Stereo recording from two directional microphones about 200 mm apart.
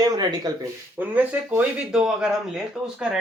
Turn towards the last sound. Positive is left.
turn(degrees=0)  # may be behind; listen again after turning